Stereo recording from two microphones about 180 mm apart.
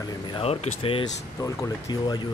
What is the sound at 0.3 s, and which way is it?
Speech, 30° left (ahead or behind).